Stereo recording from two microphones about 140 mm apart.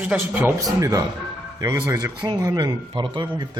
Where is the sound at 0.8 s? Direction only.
25° right (ahead or behind).